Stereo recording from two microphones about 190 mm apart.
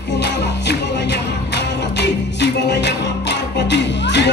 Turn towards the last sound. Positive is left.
turn(degrees=65)  # may be behind; listen again after turning